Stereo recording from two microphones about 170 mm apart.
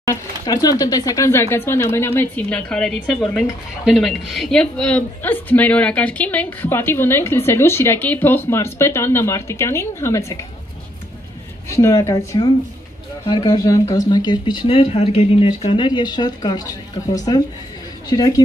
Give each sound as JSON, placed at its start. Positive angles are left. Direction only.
{"t": 0.0, "sound": "speech", "side_deg": 20}
{"t": 11.7, "sound": "speech", "side_deg": 15}